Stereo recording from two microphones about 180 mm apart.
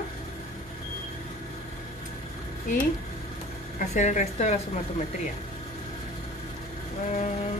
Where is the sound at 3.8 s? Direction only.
40° left (ahead or behind).